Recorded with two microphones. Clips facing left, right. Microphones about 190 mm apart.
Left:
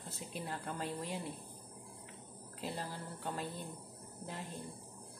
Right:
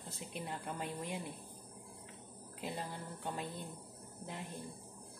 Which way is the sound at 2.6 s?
15° right (ahead or behind).